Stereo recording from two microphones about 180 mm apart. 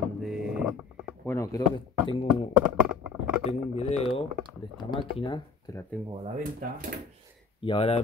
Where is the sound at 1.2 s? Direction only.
15° left (ahead or behind).